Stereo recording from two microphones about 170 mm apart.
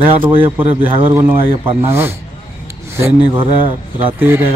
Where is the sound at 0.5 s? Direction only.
10° right (ahead or behind).